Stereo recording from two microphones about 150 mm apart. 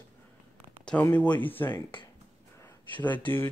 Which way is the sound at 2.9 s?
10° left (ahead or behind).